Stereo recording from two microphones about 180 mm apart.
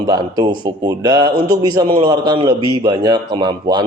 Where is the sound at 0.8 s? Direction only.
25° right (ahead or behind).